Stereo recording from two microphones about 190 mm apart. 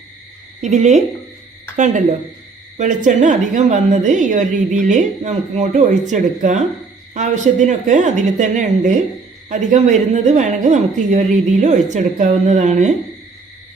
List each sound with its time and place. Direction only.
0.6 s a woman's voice: 35° right (ahead or behind)